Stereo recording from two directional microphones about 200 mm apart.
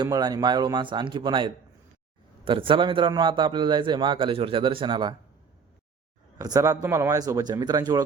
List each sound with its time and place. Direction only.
0.0 s a man's voice: 20° right (ahead or behind)
6.4 s speech: 15° right (ahead or behind)